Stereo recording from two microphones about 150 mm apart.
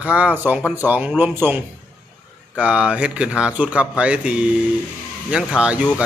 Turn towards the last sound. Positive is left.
turn(degrees=-5)  # may be behind; listen again after turning